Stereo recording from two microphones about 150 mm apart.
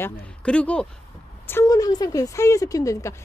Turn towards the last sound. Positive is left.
turn(degrees=20)  # may be behind; listen again after turning